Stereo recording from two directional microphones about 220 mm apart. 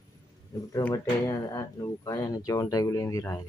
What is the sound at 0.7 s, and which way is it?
Speech, 15° left (ahead or behind).